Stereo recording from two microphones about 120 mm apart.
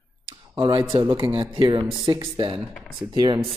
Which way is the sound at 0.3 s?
45° right (ahead or behind).